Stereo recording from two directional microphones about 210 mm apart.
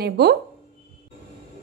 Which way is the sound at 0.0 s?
50° right (ahead or behind).